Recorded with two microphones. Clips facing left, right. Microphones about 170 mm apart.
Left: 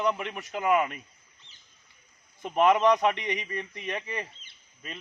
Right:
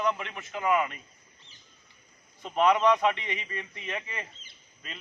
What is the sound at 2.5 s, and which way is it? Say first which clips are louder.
Speech: left 1 dB; 20° left (ahead or behind).